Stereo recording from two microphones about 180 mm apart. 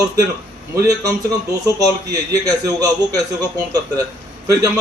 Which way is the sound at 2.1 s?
20° right (ahead or behind).